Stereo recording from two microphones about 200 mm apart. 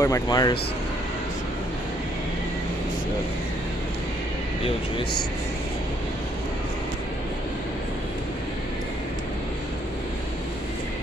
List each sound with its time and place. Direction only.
0.0 s speech: 20° left (ahead or behind)